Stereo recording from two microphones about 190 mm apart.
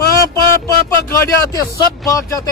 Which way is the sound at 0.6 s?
15° left (ahead or behind).